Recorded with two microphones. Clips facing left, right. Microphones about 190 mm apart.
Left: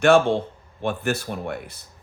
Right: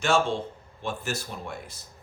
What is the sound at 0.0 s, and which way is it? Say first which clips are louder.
Speech: left 8 dB; 60° left (ahead or behind).